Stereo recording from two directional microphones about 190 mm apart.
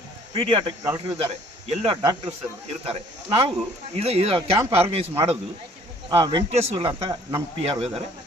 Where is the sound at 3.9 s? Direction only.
35° right (ahead or behind).